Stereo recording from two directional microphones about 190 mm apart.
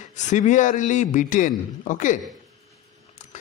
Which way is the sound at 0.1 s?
40° left (ahead or behind).